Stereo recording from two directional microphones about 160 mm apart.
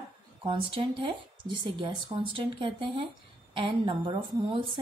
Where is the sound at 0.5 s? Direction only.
30° right (ahead or behind).